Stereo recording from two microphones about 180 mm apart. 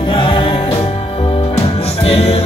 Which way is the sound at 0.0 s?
30° left (ahead or behind).